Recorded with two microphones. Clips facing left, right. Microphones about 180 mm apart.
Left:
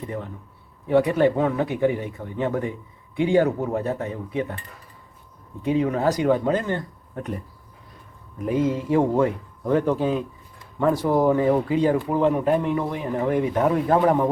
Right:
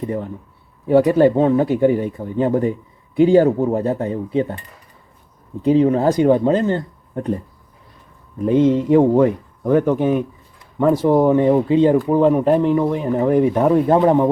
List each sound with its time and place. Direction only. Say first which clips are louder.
0.9 s speech: right 6 dB; 30° right (ahead or behind)
5.6 s speech: right 7 dB; 30° right (ahead or behind)
8.4 s speech: right 8 dB; 25° right (ahead or behind)